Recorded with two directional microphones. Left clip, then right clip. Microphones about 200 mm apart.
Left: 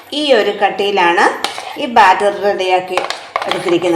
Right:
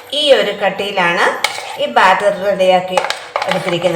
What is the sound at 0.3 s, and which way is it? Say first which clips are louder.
Speech: even; 45° left (ahead or behind).